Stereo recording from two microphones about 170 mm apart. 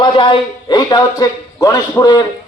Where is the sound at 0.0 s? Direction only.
30° left (ahead or behind).